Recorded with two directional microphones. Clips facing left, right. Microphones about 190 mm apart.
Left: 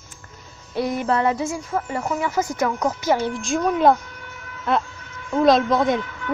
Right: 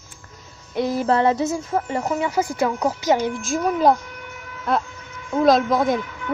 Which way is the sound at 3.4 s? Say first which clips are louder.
Left 2 dB; centre (ahead or behind).